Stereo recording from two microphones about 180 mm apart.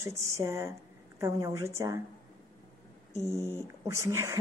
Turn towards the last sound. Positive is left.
turn(degrees=-15)  # may be behind; listen again after turning